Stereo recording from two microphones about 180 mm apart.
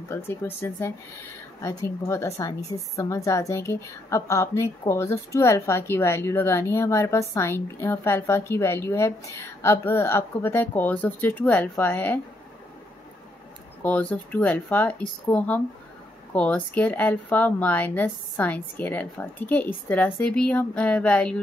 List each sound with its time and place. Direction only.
0.1 s a woman's voice: 15° left (ahead or behind)
13.8 s a woman's voice: 10° left (ahead or behind)